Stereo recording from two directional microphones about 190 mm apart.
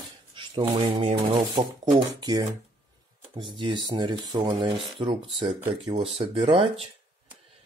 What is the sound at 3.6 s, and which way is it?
Speech, 25° right (ahead or behind).